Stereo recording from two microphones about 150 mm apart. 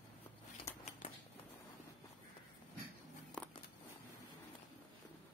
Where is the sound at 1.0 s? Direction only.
55° left (ahead or behind).